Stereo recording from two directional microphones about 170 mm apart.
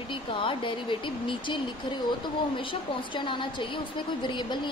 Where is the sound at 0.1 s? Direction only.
30° left (ahead or behind).